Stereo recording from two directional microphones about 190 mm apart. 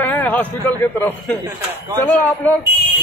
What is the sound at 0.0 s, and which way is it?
Speech, 10° left (ahead or behind).